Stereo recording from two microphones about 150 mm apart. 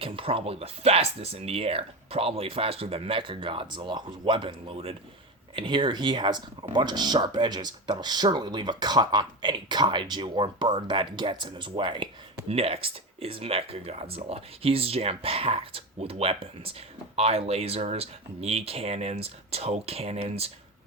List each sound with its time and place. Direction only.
0.0 s speech: 35° right (ahead or behind)